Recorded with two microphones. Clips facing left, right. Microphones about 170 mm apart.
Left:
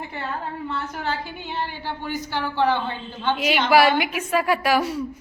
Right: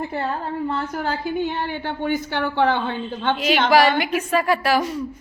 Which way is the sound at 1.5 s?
55° right (ahead or behind).